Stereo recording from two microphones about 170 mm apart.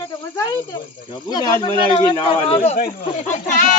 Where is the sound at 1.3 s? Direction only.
20° left (ahead or behind).